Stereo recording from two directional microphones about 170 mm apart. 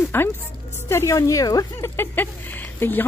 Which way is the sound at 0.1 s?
15° left (ahead or behind).